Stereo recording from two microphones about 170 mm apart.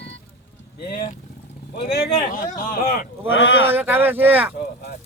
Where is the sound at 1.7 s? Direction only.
70° left (ahead or behind).